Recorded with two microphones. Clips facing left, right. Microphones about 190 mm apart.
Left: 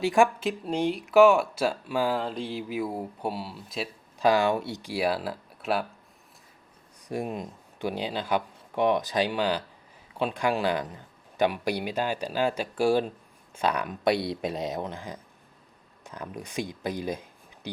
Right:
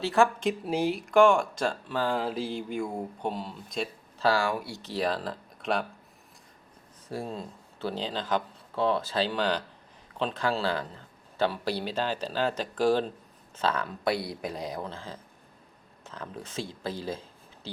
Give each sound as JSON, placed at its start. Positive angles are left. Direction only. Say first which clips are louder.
{"t": 0.0, "sound": "speech", "louder": "left 2 dB", "side_deg": 15}
{"t": 0.4, "sound": "speech", "louder": "even", "side_deg": -5}
{"t": 2.2, "sound": "speech", "louder": "right 1 dB", "side_deg": -5}
{"t": 4.2, "sound": "speech", "louder": "left 4 dB", "side_deg": 20}
{"t": 4.8, "sound": "speech", "louder": "left 2 dB", "side_deg": 10}
{"t": 7.1, "sound": "speech", "louder": "left 3 dB", "side_deg": 15}